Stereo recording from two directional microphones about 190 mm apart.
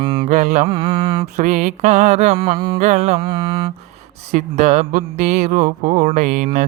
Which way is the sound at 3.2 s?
25° right (ahead or behind).